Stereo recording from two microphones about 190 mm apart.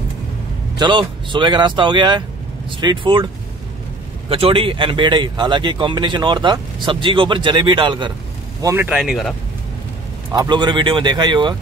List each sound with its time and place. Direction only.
0.7 s speech: 25° right (ahead or behind)
4.3 s speech: 30° right (ahead or behind)
8.6 s speech: 10° right (ahead or behind)
10.3 s speech: 20° right (ahead or behind)